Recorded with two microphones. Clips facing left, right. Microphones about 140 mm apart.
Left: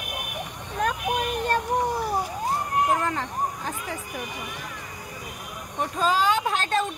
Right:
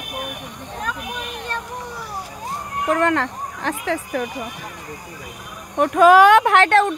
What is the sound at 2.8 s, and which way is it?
Speech, 75° right (ahead or behind).